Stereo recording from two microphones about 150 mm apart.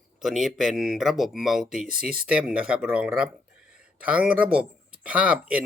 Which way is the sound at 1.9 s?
75° right (ahead or behind).